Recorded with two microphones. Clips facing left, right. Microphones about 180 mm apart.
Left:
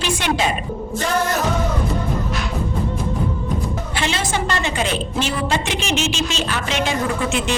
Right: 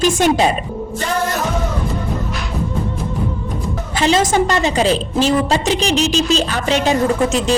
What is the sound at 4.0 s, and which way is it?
A woman's voice, 40° right (ahead or behind).